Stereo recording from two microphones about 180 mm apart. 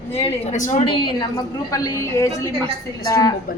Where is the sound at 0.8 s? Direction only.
30° left (ahead or behind).